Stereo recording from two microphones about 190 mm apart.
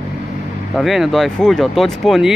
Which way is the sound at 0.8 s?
Centre (ahead or behind).